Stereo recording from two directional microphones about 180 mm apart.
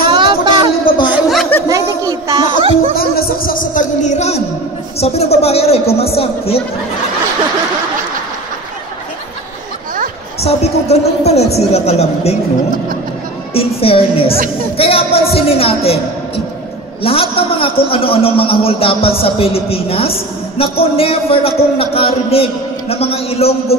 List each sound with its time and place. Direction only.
0.0 s music: 25° right (ahead or behind)
1.1 s a sound: centre (ahead or behind)
1.7 s music: 20° right (ahead or behind)
3.0 s music: 55° left (ahead or behind)
5.0 s a man's voice: 35° left (ahead or behind)
10.4 s a man's voice: 35° left (ahead or behind)
13.6 s a man's voice: 30° left (ahead or behind)
17.0 s a man's voice: 30° left (ahead or behind)